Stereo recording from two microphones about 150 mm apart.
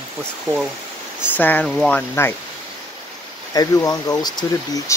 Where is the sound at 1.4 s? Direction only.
10° left (ahead or behind).